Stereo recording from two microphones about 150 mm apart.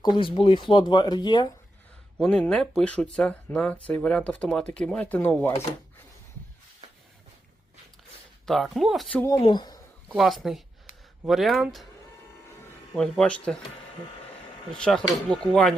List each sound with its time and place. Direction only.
0.0 s speech: 35° left (ahead or behind)
2.2 s speech: 5° left (ahead or behind)
8.4 s speech: centre (ahead or behind)
9.1 s speech: 20° left (ahead or behind)
9.4 s speech: 30° left (ahead or behind)
10.2 s speech: centre (ahead or behind)
13.0 s speech: 5° left (ahead or behind)
14.7 s speech: 5° left (ahead or behind)